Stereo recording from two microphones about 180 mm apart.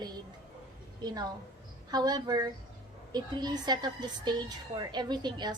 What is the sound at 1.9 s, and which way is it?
A woman's voice, 20° right (ahead or behind).